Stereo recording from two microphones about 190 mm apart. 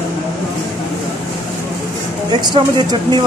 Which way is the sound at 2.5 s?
25° right (ahead or behind).